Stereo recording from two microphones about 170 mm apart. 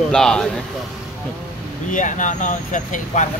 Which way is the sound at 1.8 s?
50° left (ahead or behind).